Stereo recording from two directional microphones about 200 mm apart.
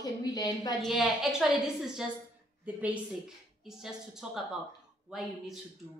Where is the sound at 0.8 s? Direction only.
Centre (ahead or behind).